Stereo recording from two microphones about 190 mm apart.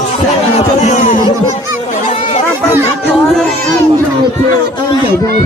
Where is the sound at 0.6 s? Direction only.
40° left (ahead or behind).